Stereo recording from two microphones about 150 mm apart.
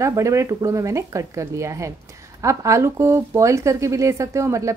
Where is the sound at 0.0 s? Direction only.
20° right (ahead or behind).